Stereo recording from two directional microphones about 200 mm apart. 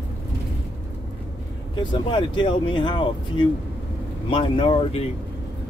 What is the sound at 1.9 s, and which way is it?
Speech, 25° left (ahead or behind).